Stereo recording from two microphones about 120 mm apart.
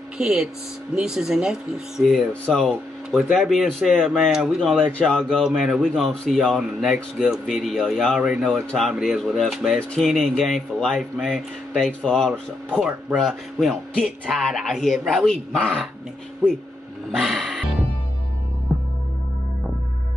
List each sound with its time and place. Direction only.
0.2 s a man's voice: 5° right (ahead or behind)
17.1 s music: centre (ahead or behind)
18.7 s music: centre (ahead or behind)